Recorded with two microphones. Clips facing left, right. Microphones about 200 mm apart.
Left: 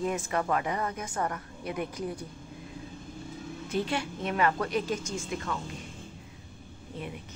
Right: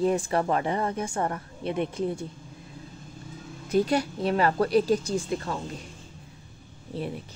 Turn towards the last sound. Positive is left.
turn(degrees=-35)  # may be behind; listen again after turning